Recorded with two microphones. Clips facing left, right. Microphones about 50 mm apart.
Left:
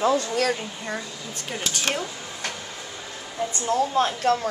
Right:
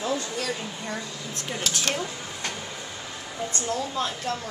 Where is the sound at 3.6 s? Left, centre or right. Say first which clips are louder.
Left 8 dB; left.